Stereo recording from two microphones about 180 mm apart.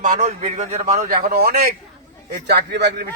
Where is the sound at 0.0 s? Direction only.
45° right (ahead or behind).